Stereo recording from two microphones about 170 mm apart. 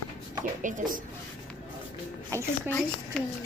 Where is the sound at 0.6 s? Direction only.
50° right (ahead or behind).